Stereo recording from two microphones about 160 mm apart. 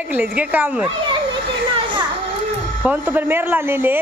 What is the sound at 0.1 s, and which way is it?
Speech, 10° right (ahead or behind).